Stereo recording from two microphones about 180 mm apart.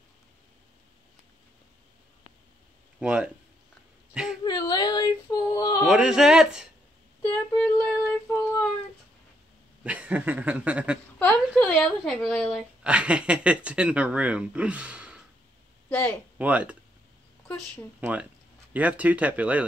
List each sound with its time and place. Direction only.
3.0 s speech: 5° right (ahead or behind)
4.5 s speech: 25° left (ahead or behind)
5.9 s speech: 5° right (ahead or behind)
7.5 s a sound: 5° left (ahead or behind)
9.8 s speech: 10° right (ahead or behind)
11.4 s speech: 5° left (ahead or behind)
15.9 s speech: 10° left (ahead or behind)
16.3 s speech: 10° right (ahead or behind)
18.7 s speech: 10° right (ahead or behind)